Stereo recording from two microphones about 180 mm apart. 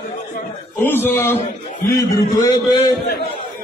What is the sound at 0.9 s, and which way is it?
A man's voice, 10° left (ahead or behind).